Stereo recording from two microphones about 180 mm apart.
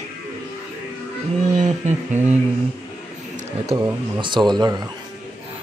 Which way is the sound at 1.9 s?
40° right (ahead or behind).